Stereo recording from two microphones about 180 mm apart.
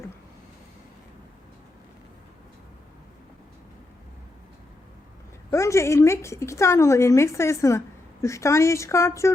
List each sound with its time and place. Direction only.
5.5 s a woman's voice: 15° left (ahead or behind)